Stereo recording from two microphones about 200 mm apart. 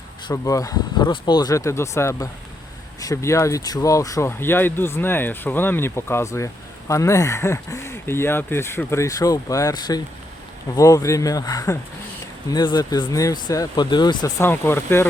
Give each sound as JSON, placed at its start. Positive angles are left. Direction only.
{"t": 0.3, "sound": "speech", "side_deg": 15}